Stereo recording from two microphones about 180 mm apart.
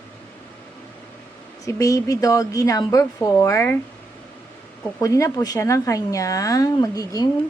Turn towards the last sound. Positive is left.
turn(degrees=20)  # may be behind; listen again after turning